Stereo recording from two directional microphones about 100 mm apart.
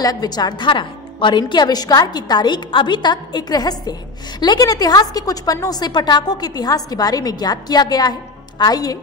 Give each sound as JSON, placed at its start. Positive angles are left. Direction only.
{"t": 0.0, "sound": "a woman's voice", "side_deg": 40}